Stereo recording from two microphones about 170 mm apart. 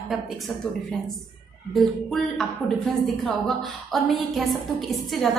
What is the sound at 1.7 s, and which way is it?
A woman's voice, centre (ahead or behind).